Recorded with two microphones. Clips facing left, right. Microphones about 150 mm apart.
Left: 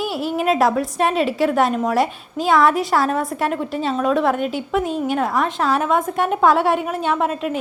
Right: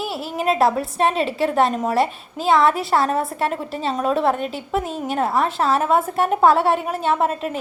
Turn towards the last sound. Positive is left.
turn(degrees=0)  # may be behind; listen again after turning